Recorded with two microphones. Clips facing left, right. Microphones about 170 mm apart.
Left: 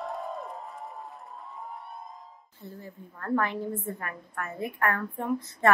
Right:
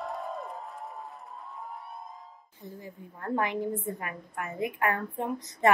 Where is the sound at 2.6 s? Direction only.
15° right (ahead or behind).